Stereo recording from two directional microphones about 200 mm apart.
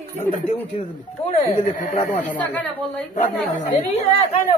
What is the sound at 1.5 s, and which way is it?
Speech, 40° left (ahead or behind).